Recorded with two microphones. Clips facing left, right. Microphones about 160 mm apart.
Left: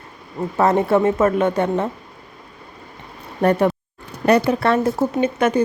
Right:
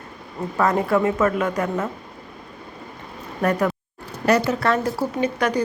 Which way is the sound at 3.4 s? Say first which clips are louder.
Left 4 dB; 30° left (ahead or behind).